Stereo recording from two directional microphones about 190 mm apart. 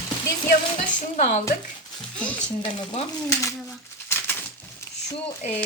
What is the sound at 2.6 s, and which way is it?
Speech, 25° left (ahead or behind).